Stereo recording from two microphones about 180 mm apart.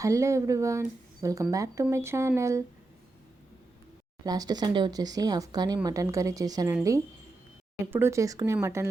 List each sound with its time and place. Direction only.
0.0 s speech: 15° right (ahead or behind)
4.2 s speech: 20° right (ahead or behind)
7.9 s speech: 15° right (ahead or behind)